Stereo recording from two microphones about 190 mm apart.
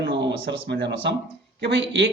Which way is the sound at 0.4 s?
65° right (ahead or behind).